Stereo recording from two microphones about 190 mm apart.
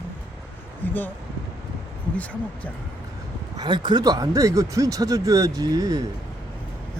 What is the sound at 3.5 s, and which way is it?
Speech, 25° right (ahead or behind).